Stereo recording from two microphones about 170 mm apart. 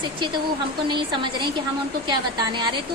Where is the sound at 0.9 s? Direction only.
30° right (ahead or behind).